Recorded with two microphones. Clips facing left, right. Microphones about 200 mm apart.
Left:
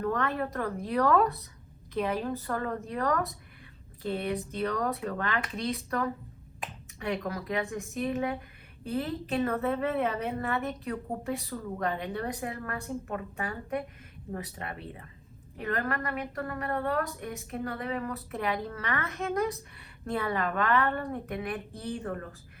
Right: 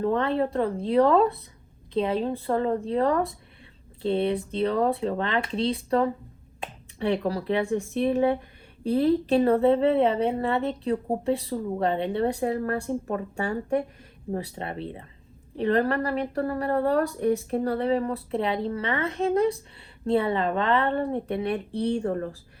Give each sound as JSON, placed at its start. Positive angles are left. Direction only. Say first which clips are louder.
{"t": 0.0, "sound": "a woman's voice", "louder": "right 6 dB", "side_deg": -25}